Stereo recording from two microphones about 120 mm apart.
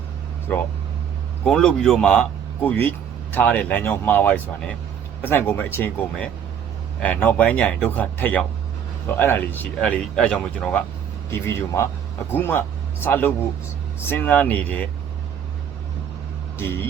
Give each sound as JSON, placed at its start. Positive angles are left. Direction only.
{"t": 1.5, "sound": "speech", "side_deg": 5}
{"t": 7.0, "sound": "speech", "side_deg": 10}
{"t": 11.3, "sound": "speech", "side_deg": 20}
{"t": 16.6, "sound": "speech", "side_deg": 20}